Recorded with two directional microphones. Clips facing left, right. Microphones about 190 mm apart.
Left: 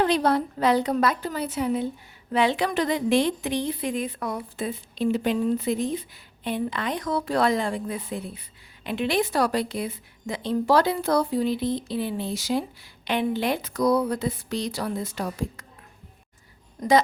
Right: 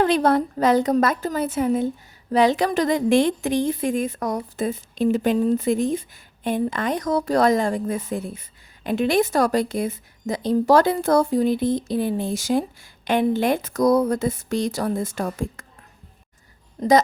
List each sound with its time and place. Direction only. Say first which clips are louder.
0.0 s a woman's voice: right 3 dB; 50° right (ahead or behind)